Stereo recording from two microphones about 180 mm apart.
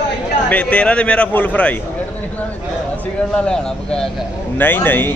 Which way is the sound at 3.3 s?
5° left (ahead or behind).